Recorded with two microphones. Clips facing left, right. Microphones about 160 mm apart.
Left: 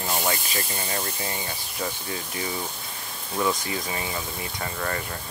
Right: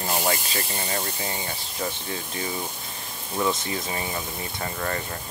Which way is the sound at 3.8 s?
25° right (ahead or behind).